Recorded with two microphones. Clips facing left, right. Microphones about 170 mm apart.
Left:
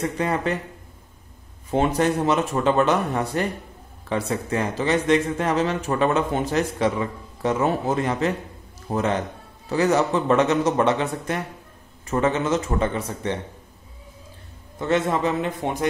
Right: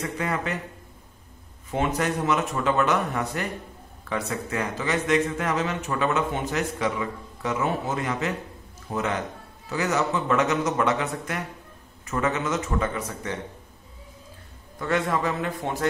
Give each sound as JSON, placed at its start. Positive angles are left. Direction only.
{"t": 0.0, "sound": "speech", "side_deg": 30}
{"t": 1.7, "sound": "speech", "side_deg": 30}
{"t": 14.8, "sound": "speech", "side_deg": 25}